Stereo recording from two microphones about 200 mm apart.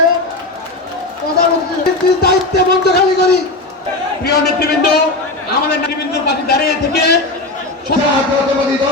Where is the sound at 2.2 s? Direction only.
55° left (ahead or behind).